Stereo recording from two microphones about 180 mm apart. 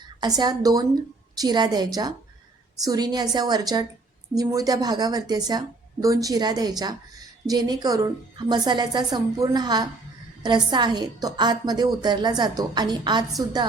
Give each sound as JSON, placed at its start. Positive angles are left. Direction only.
{"t": 0.2, "sound": "a woman's voice", "side_deg": -20}